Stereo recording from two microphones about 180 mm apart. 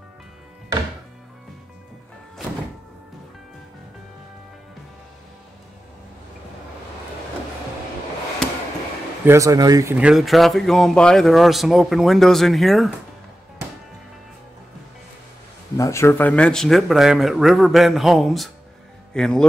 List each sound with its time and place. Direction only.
9.2 s speech: 15° right (ahead or behind)
9.9 s speech: 5° right (ahead or behind)
15.8 s speech: 15° left (ahead or behind)